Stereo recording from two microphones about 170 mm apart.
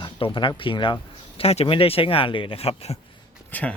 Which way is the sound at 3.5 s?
10° left (ahead or behind).